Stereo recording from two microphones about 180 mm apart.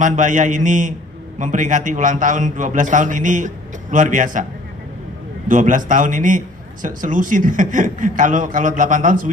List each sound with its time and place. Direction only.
0.0 s a man's voice: 45° right (ahead or behind)
5.5 s a man's voice: 45° right (ahead or behind)